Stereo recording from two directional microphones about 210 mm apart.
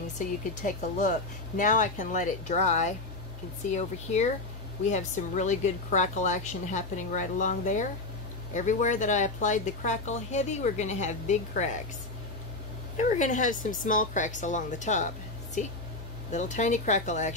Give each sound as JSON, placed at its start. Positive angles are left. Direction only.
{"t": 0.6, "sound": "speech", "side_deg": 35}
{"t": 12.9, "sound": "speech", "side_deg": 35}